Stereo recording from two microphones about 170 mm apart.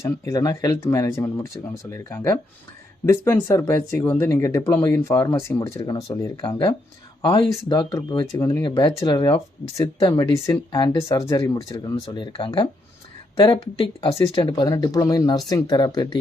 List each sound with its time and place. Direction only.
0.0 s speech: 20° left (ahead or behind)
6.5 s speech: 30° left (ahead or behind)
8.7 s speech: 30° left (ahead or behind)
11.7 s speech: 30° left (ahead or behind)